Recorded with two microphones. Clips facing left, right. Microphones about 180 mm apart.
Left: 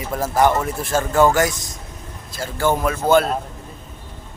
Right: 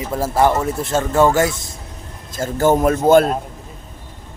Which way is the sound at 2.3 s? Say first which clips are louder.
Right 5 dB; 45° right (ahead or behind).